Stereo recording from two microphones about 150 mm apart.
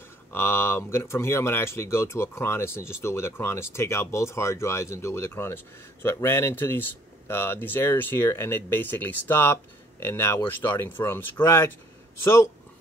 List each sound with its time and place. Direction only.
0.3 s speech: 15° left (ahead or behind)